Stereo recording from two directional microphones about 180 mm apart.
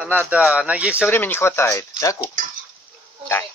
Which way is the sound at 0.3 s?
5° right (ahead or behind).